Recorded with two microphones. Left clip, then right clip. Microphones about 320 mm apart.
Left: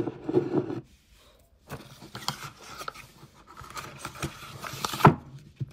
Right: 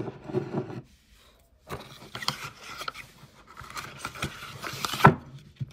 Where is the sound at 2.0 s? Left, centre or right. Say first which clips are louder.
Right 2 dB; centre.